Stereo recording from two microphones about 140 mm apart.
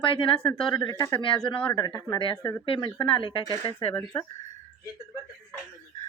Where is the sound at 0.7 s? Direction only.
25° left (ahead or behind).